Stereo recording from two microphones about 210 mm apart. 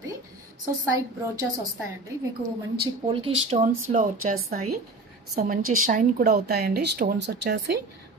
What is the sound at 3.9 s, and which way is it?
Speech, 40° right (ahead or behind).